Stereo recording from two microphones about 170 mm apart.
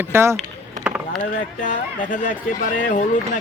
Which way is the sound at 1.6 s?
50° left (ahead or behind).